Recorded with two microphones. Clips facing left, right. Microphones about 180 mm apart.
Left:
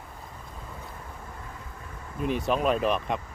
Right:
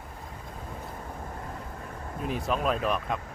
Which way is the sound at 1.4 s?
50° right (ahead or behind).